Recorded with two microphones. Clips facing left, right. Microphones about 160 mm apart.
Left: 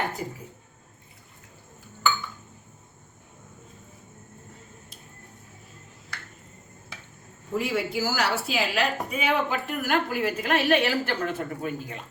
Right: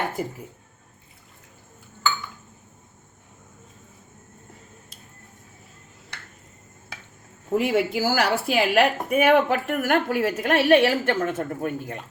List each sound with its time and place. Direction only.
7.5 s a woman's voice: 55° right (ahead or behind)